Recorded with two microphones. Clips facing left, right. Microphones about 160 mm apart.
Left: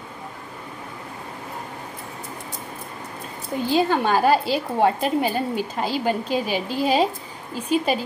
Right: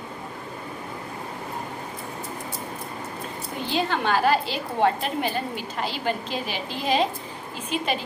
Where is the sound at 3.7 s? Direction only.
45° left (ahead or behind).